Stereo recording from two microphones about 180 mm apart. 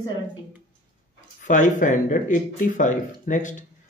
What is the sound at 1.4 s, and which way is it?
Speech, 45° left (ahead or behind).